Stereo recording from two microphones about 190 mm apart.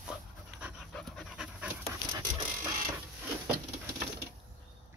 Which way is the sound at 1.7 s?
20° right (ahead or behind).